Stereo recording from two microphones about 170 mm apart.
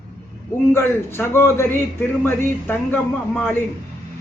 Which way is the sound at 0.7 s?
15° left (ahead or behind).